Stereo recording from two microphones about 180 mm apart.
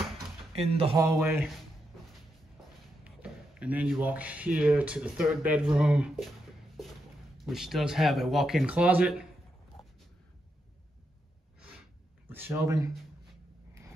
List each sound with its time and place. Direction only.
0.6 s speech: 35° right (ahead or behind)
1.3 s speech: centre (ahead or behind)
3.0 s speech: 5° right (ahead or behind)
7.3 s speech: centre (ahead or behind)
12.3 s speech: 10° right (ahead or behind)